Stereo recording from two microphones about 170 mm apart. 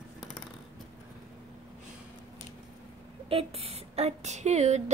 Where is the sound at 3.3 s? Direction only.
35° right (ahead or behind).